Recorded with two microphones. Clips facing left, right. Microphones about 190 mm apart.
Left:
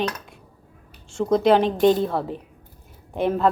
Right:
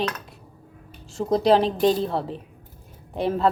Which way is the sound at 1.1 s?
Centre (ahead or behind).